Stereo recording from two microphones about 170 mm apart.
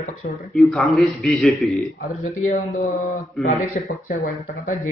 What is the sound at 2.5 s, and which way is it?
Mantra, 45° left (ahead or behind).